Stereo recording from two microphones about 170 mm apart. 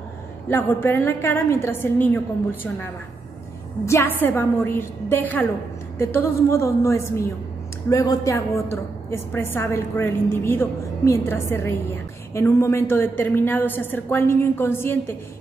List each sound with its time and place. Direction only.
0.5 s a woman's voice: 10° left (ahead or behind)